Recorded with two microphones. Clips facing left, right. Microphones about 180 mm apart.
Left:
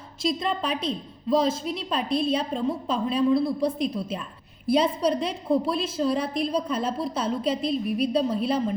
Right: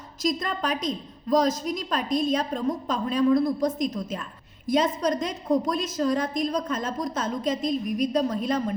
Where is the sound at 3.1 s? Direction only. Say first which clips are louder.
Right 2 dB; 10° left (ahead or behind).